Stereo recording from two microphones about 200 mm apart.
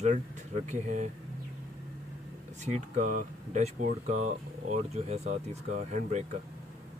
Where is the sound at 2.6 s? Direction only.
40° right (ahead or behind).